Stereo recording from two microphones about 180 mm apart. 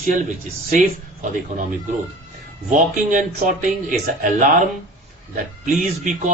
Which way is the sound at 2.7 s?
45° right (ahead or behind).